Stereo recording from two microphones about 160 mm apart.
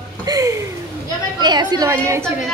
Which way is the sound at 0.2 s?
20° right (ahead or behind).